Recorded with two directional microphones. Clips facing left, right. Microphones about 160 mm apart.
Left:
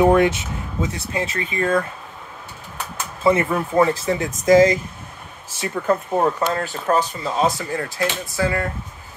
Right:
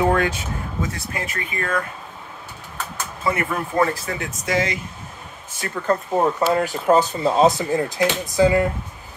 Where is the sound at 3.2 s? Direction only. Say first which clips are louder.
Left 6 dB; 25° left (ahead or behind).